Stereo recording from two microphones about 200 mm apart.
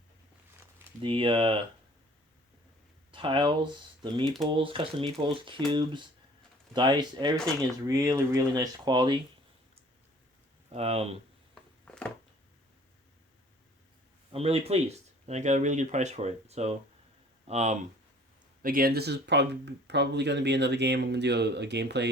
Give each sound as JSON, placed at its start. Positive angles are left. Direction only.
{"t": 1.0, "sound": "speech", "side_deg": -25}
{"t": 3.1, "sound": "speech", "side_deg": -25}
{"t": 10.7, "sound": "speech", "side_deg": -30}
{"t": 11.9, "sound": "a sound", "side_deg": 5}
{"t": 14.3, "sound": "speech", "side_deg": -30}
{"t": 18.6, "sound": "speech", "side_deg": -45}